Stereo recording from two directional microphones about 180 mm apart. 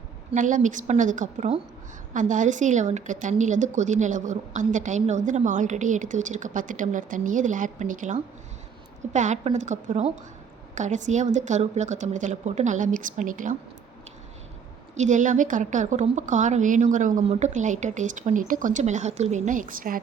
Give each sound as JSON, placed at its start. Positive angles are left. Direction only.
{"t": 0.3, "sound": "a woman's voice", "side_deg": -45}
{"t": 14.9, "sound": "a woman's voice", "side_deg": -45}